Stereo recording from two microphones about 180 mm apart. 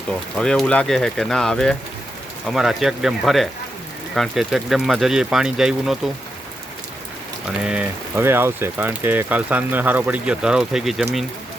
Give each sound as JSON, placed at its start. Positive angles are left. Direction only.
{"t": 0.1, "sound": "speech", "side_deg": 5}
{"t": 7.6, "sound": "speech", "side_deg": -5}